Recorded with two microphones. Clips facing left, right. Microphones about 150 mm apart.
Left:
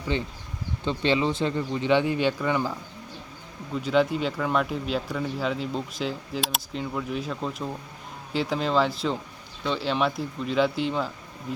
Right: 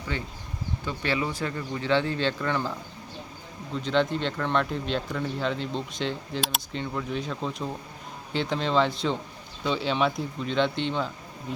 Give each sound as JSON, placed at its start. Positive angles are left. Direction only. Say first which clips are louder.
{"t": 0.1, "sound": "speech", "louder": "left 4 dB", "side_deg": 20}
{"t": 3.8, "sound": "speech", "louder": "left 2 dB", "side_deg": 5}